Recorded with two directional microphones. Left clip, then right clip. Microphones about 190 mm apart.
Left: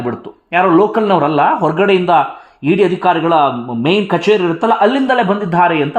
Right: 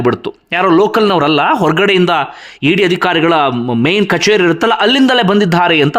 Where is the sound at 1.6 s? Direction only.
20° right (ahead or behind).